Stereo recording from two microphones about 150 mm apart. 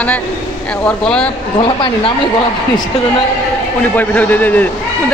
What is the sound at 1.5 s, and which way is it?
Speech, 35° left (ahead or behind).